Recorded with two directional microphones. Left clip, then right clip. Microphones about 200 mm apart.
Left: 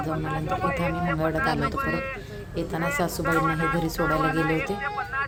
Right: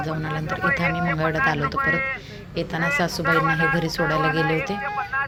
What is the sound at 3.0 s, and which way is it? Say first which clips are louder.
Speech: right 2 dB; 5° left (ahead or behind).